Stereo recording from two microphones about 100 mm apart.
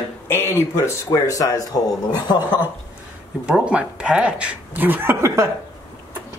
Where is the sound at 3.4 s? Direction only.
10° right (ahead or behind); by 5.5 s 25° right (ahead or behind).